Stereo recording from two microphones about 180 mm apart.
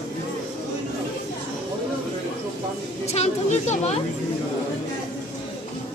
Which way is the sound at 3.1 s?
35° left (ahead or behind).